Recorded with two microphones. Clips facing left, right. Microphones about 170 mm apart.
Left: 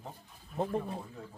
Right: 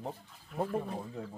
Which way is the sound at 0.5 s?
90° right.